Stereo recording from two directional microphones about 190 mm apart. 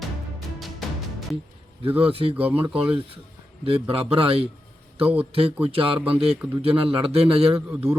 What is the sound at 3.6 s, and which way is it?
A man's voice, 30° right (ahead or behind).